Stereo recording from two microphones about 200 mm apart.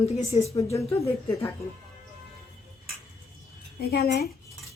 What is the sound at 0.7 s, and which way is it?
Speech, 15° left (ahead or behind).